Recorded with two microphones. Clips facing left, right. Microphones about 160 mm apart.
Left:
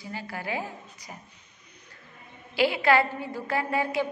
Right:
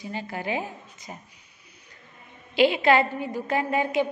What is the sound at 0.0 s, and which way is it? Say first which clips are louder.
A woman's voice: right 4 dB; 20° right (ahead or behind).